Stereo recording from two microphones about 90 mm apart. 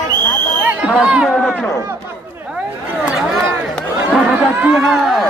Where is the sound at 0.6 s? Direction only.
15° right (ahead or behind).